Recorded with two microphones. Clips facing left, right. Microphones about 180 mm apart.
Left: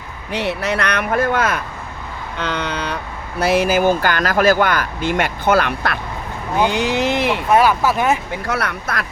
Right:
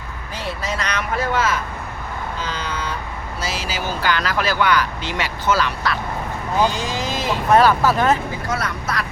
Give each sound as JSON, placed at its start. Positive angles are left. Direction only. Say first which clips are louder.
{"t": 0.3, "sound": "speech", "louder": "left 6 dB", "side_deg": 70}
{"t": 2.4, "sound": "speech", "louder": "left 7 dB", "side_deg": 65}
{"t": 7.5, "sound": "speech", "louder": "right 1 dB", "side_deg": 10}
{"t": 8.4, "sound": "speech", "louder": "left 3 dB", "side_deg": 65}